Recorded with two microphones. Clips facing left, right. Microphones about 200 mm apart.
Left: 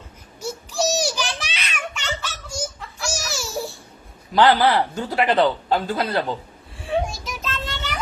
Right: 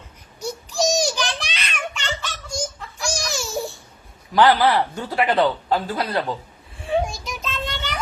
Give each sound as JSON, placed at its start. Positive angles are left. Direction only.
{"t": 0.3, "sound": "a sound", "side_deg": 5}
{"t": 4.4, "sound": "speech", "side_deg": 20}
{"t": 6.7, "sound": "child singing", "side_deg": 0}